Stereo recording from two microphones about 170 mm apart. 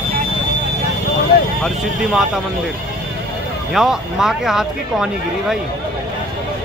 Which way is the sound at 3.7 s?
5° right (ahead or behind).